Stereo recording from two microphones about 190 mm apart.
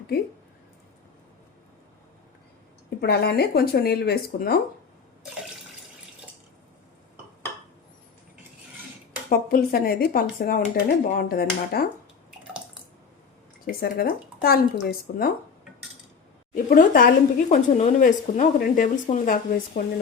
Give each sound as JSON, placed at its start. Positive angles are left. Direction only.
{"t": 3.0, "sound": "speech", "side_deg": 55}
{"t": 9.3, "sound": "speech", "side_deg": 50}
{"t": 13.7, "sound": "speech", "side_deg": 55}
{"t": 16.6, "sound": "speech", "side_deg": 50}